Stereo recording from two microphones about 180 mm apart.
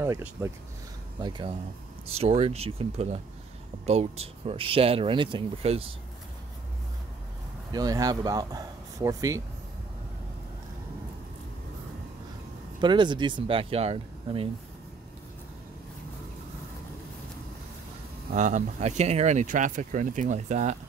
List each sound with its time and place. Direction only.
0.0 s speech: 15° right (ahead or behind)
1.2 s speech: 25° right (ahead or behind)
7.7 s speech: 20° right (ahead or behind)
12.7 s speech: 25° right (ahead or behind)
18.3 s speech: 40° right (ahead or behind)